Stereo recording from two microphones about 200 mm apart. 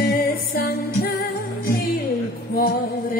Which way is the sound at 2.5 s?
45° left (ahead or behind).